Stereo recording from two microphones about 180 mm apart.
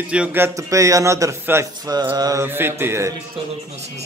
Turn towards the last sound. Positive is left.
turn(degrees=-15)  # may be behind; listen again after turning